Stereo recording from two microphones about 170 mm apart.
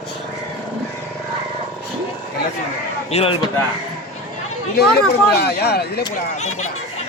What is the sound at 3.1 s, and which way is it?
Speech, 35° left (ahead or behind).